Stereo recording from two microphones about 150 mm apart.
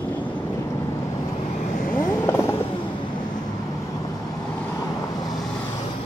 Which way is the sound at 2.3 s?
20° left (ahead or behind).